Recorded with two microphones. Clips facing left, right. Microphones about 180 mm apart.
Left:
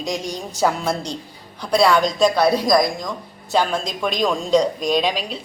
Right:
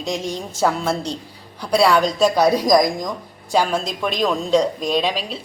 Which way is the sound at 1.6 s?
10° right (ahead or behind).